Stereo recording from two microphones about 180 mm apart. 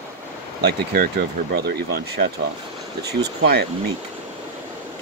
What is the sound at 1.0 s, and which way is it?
Speech, 60° right (ahead or behind).